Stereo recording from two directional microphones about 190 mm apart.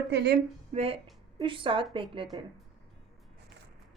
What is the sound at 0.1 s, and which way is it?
Speech, 65° right (ahead or behind).